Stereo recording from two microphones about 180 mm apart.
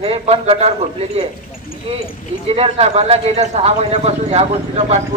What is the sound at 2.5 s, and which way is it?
A man's voice, 35° right (ahead or behind).